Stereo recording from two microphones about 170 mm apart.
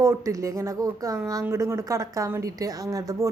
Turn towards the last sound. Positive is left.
turn(degrees=-20)  # may be behind; listen again after turning